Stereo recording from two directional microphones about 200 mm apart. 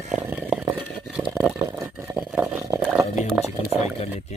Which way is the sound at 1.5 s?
10° right (ahead or behind).